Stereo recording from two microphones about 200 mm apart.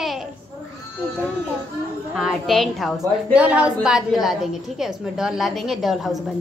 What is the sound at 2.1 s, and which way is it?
A woman's voice, centre (ahead or behind).